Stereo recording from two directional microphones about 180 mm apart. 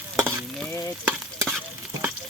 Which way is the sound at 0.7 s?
20° left (ahead or behind).